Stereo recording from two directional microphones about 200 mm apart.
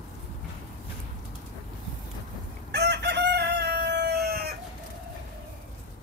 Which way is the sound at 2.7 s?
55° right (ahead or behind).